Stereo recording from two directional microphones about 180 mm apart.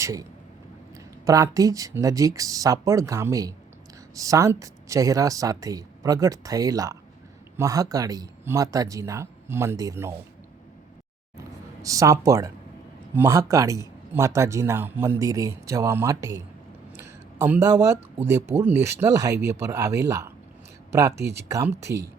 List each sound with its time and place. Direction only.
0.0 s speech: 20° right (ahead or behind)
11.8 s a man's voice: 20° right (ahead or behind)
17.0 s a sound: 10° right (ahead or behind)
18.5 s a man's voice: 10° right (ahead or behind)
21.9 s speech: 65° right (ahead or behind)